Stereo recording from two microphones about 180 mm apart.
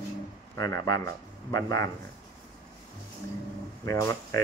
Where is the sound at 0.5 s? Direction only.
20° left (ahead or behind).